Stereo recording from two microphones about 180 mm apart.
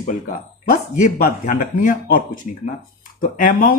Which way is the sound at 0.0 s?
50° left (ahead or behind).